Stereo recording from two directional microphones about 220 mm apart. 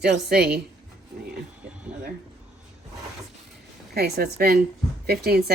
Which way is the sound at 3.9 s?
45° right (ahead or behind).